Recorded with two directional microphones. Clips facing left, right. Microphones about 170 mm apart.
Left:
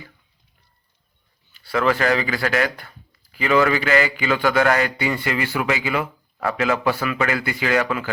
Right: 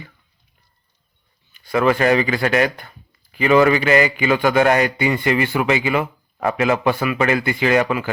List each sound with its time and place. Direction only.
1.5 s a man's voice: 15° right (ahead or behind)